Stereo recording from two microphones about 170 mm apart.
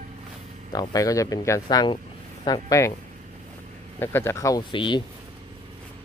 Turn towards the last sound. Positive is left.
turn(degrees=30)  # may be behind; listen again after turning